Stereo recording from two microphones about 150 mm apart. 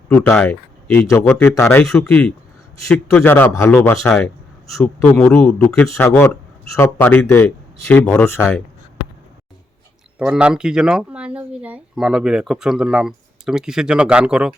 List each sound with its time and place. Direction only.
0.1 s speech: 10° left (ahead or behind)
10.2 s speech: 5° right (ahead or behind)